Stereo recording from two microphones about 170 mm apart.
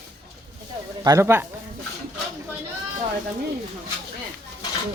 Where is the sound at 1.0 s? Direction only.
20° right (ahead or behind).